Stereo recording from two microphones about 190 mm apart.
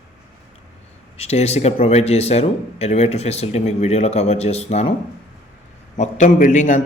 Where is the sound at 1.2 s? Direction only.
35° left (ahead or behind).